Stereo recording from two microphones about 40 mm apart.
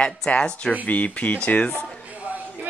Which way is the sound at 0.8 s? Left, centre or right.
Left.